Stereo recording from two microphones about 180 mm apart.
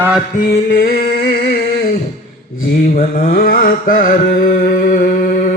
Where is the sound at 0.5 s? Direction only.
50° left (ahead or behind).